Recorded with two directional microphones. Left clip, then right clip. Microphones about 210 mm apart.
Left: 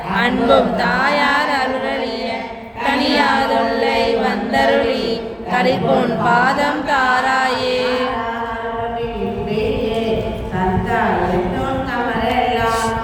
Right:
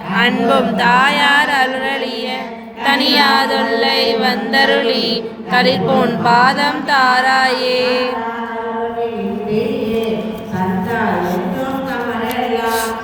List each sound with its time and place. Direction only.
0.4 s speech: 15° left (ahead or behind)
2.8 s speech: 10° left (ahead or behind)